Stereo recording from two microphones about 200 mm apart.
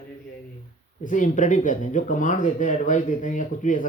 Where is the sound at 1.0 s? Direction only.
40° left (ahead or behind).